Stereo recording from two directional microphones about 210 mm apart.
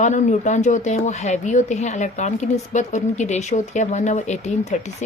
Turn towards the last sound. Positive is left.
turn(degrees=35)  # may be behind; listen again after turning